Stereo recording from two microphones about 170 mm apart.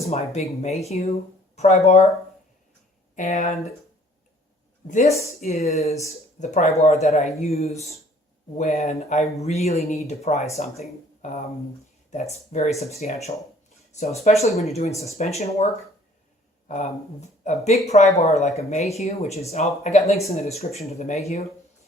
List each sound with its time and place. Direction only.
0.0 s speech: 40° left (ahead or behind)
3.2 s speech: 40° left (ahead or behind)
4.9 s speech: 45° left (ahead or behind)
16.6 s speech: 45° left (ahead or behind)